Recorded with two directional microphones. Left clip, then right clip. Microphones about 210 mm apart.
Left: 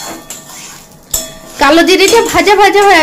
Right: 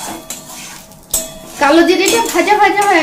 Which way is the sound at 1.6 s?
40° left (ahead or behind).